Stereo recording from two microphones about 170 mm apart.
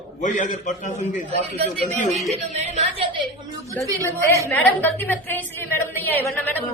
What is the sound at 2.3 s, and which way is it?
Speech, 40° right (ahead or behind).